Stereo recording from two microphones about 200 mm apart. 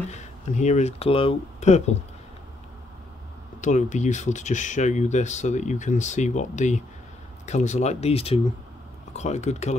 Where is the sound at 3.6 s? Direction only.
35° left (ahead or behind).